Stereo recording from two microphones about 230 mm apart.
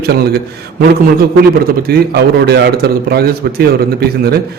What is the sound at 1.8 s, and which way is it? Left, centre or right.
A man's voice, right.